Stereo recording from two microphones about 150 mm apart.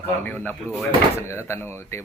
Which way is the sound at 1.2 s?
15° left (ahead or behind).